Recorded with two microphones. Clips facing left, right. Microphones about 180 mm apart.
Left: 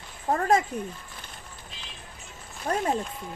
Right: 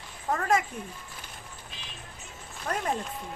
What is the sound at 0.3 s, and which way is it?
Speech, 35° left (ahead or behind).